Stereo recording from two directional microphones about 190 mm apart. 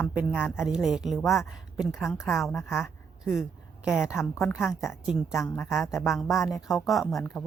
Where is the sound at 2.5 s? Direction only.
15° left (ahead or behind).